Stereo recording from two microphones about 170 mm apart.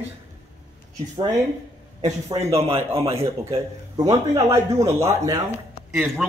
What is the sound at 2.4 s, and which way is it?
Speech, 35° right (ahead or behind).